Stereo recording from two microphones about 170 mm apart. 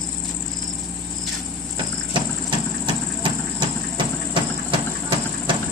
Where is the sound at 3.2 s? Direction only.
30° right (ahead or behind).